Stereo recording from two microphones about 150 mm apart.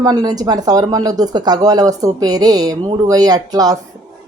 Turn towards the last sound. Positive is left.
turn(degrees=-25)  # may be behind; listen again after turning